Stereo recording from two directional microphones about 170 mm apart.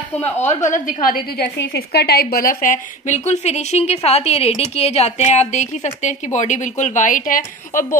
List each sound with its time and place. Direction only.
0.5 s a woman's voice: 45° left (ahead or behind)